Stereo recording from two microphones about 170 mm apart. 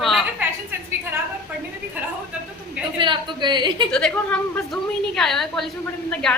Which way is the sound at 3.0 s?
30° right (ahead or behind).